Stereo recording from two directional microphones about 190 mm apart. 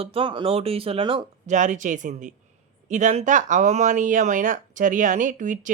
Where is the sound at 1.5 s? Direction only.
40° right (ahead or behind).